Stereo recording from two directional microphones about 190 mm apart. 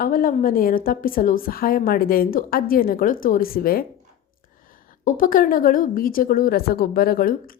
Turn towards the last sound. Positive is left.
turn(degrees=50)  # may be behind; listen again after turning